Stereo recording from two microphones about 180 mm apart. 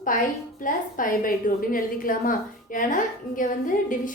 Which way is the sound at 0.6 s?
50° left (ahead or behind).